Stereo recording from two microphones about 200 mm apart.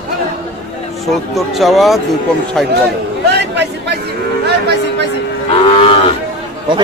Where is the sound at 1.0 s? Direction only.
Centre (ahead or behind).